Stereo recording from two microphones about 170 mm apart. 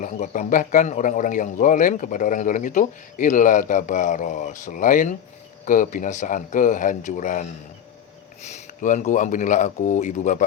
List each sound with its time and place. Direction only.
0.0 s a man's voice: 50° left (ahead or behind)